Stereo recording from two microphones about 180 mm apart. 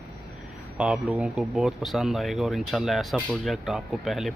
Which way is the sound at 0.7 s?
5° right (ahead or behind).